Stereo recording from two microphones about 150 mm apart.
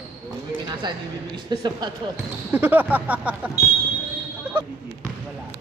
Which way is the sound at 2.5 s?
10° right (ahead or behind).